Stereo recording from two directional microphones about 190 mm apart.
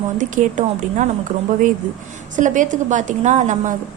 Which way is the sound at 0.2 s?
40° right (ahead or behind).